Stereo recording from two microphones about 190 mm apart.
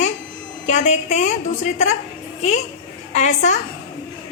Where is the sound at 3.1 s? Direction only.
40° left (ahead or behind).